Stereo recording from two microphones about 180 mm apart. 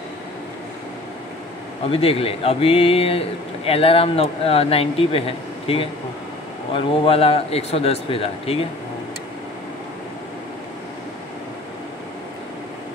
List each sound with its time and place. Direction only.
1.9 s a man's voice: 30° left (ahead or behind)